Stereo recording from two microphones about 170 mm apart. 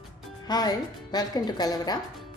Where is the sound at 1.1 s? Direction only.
25° left (ahead or behind).